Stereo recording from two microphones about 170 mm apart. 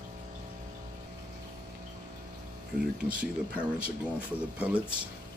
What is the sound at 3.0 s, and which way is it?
Speech, 10° right (ahead or behind).